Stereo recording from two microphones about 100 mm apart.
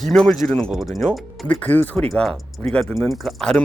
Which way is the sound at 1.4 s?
15° left (ahead or behind).